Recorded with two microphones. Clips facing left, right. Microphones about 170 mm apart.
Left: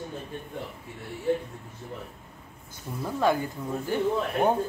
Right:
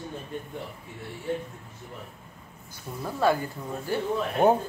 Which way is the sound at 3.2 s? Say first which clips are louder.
Right 1 dB; 15° left (ahead or behind).